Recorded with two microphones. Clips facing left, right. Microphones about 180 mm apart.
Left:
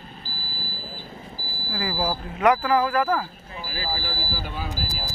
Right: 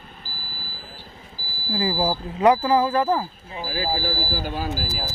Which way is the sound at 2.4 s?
30° right (ahead or behind).